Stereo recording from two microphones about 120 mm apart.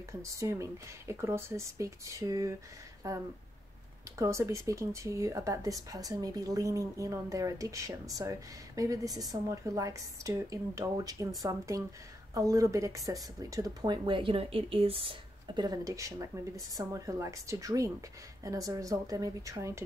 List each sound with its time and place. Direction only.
0.2 s speech: 25° right (ahead or behind)